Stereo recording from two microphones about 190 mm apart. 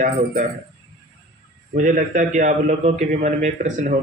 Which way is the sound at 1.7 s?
40° right (ahead or behind).